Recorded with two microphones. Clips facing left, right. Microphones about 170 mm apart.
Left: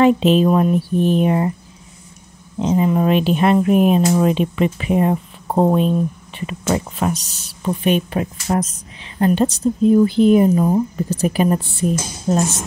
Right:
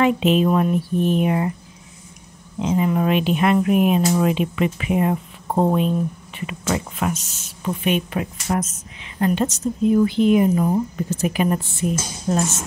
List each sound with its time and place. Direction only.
0.0 s speech: 35° left (ahead or behind)
2.6 s speech: 30° left (ahead or behind)